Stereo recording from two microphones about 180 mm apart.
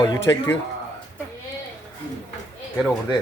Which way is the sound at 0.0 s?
20° left (ahead or behind).